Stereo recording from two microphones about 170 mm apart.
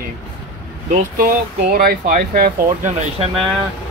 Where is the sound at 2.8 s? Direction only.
45° right (ahead or behind).